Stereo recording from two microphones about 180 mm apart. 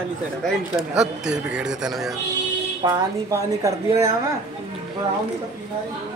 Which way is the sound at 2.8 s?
15° right (ahead or behind).